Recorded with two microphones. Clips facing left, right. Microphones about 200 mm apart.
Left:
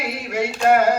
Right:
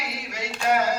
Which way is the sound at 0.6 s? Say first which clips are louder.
Left 6 dB; 55° left (ahead or behind).